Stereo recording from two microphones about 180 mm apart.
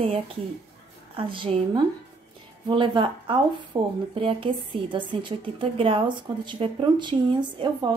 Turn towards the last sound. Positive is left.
turn(degrees=-25)  # may be behind; listen again after turning